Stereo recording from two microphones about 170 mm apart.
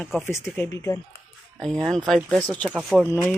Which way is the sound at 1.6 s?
5° left (ahead or behind).